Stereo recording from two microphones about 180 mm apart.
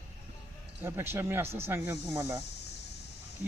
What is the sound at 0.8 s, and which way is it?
Speech, 15° right (ahead or behind).